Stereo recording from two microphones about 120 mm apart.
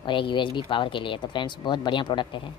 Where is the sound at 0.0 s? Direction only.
45° left (ahead or behind).